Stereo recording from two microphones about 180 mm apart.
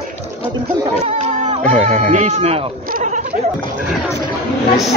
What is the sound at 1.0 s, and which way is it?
Speech, 40° right (ahead or behind).